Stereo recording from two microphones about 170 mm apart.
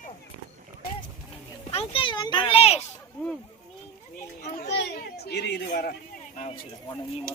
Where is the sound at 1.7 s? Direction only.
35° left (ahead or behind).